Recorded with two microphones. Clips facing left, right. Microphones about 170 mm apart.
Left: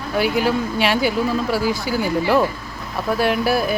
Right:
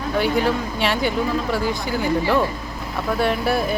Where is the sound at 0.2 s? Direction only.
5° left (ahead or behind).